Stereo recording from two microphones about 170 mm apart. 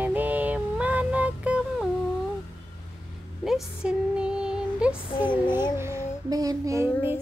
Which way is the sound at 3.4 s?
5° right (ahead or behind).